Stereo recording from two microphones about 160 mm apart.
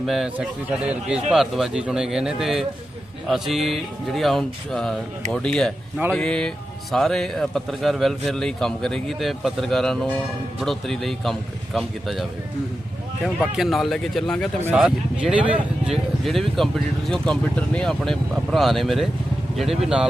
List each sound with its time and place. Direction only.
0.0 s a man's voice: centre (ahead or behind)
13.2 s a man's voice: centre (ahead or behind)
14.6 s a man's voice: 5° right (ahead or behind)